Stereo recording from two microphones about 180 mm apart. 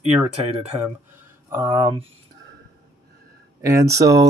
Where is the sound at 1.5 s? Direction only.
20° right (ahead or behind).